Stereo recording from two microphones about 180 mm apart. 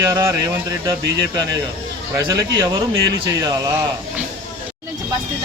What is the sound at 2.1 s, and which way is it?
Speech, 20° right (ahead or behind).